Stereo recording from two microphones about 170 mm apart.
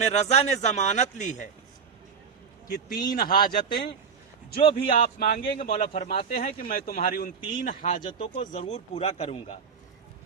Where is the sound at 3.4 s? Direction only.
70° left (ahead or behind).